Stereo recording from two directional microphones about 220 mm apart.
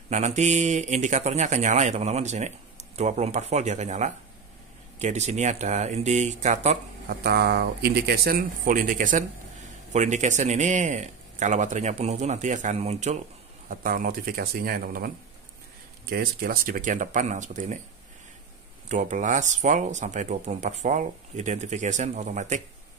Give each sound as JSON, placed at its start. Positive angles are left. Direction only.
{"t": 0.1, "sound": "speech", "side_deg": -35}
{"t": 7.1, "sound": "speech", "side_deg": -45}
{"t": 18.9, "sound": "speech", "side_deg": -35}